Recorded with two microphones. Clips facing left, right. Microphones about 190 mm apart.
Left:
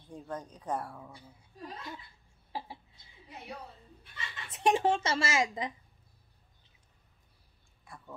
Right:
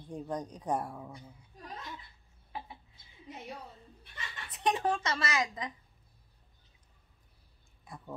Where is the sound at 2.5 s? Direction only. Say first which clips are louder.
Left 3 dB; 30° left (ahead or behind).